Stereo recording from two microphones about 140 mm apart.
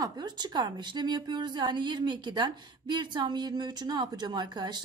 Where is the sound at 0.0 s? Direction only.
30° right (ahead or behind).